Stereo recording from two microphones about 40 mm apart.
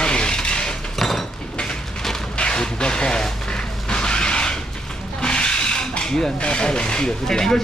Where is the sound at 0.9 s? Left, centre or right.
Centre.